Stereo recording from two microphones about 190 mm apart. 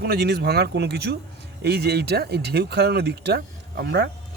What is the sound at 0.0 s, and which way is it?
Speech, 55° right (ahead or behind).